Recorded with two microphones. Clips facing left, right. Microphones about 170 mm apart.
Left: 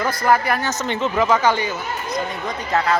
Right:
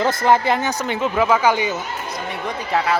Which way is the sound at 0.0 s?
25° right (ahead or behind).